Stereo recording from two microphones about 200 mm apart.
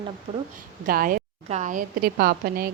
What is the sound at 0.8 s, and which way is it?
A woman's voice, 45° right (ahead or behind).